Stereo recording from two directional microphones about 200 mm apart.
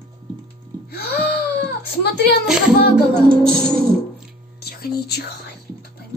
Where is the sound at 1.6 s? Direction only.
55° left (ahead or behind).